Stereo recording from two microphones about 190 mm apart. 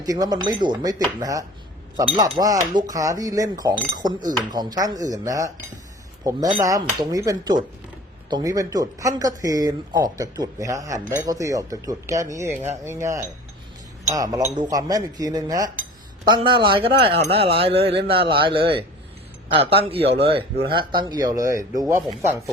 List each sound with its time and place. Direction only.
0.0 s cutlery: 20° right (ahead or behind)
8.3 s speech: 20° right (ahead or behind)
14.1 s cutlery: 20° right (ahead or behind)
20.1 s speech: 30° right (ahead or behind)
20.7 s cutlery: 25° right (ahead or behind)